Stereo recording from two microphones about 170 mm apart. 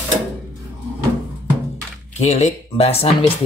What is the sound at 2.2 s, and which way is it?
Speech, 40° left (ahead or behind).